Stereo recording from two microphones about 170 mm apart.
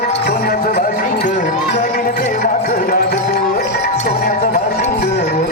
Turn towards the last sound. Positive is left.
turn(degrees=60)  # may be behind; listen again after turning